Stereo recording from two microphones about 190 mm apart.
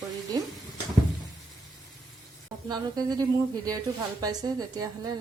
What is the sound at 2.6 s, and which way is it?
Speech, 20° right (ahead or behind).